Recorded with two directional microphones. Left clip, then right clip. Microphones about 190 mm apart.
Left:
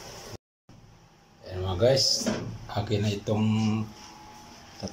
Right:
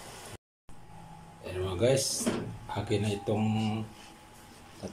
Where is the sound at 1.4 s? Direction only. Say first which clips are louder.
Left 4 dB; centre (ahead or behind).